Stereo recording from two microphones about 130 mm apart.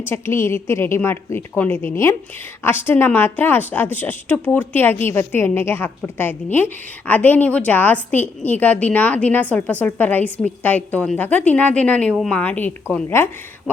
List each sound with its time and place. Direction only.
0.0 s a woman's voice: 20° left (ahead or behind)